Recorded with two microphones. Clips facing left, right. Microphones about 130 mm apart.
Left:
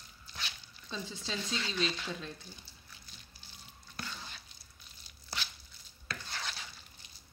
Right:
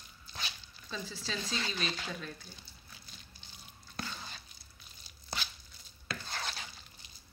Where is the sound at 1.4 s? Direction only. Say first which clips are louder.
Right 1 dB; 40° right (ahead or behind).